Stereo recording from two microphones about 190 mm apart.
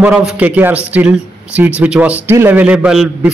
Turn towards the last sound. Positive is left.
turn(degrees=-5)  # may be behind; listen again after turning